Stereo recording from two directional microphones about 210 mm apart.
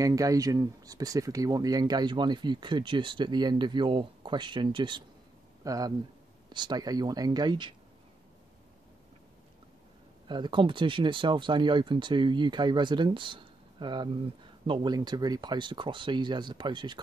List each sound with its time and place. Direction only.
0.0 s speech: 15° right (ahead or behind)
10.2 s speech: 20° right (ahead or behind)